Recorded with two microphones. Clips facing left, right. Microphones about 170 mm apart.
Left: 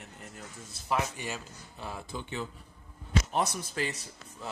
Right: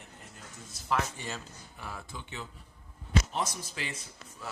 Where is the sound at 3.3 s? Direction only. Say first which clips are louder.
Left 4 dB; 65° left (ahead or behind).